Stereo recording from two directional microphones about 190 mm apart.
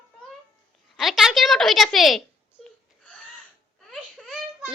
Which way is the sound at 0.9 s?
Centre (ahead or behind).